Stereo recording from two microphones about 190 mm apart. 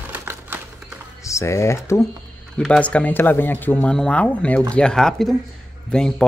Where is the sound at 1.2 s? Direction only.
15° left (ahead or behind).